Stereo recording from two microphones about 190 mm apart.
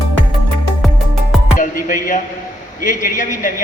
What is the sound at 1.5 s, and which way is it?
Music, 45° left (ahead or behind).